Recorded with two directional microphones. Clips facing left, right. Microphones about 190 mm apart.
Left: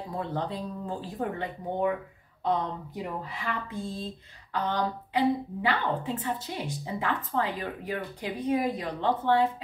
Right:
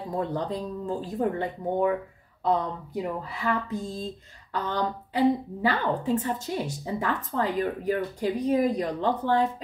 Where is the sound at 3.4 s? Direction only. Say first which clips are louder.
Right 7 dB; 40° right (ahead or behind).